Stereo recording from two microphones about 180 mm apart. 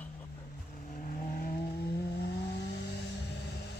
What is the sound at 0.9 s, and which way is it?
Vehicle, 45° left (ahead or behind).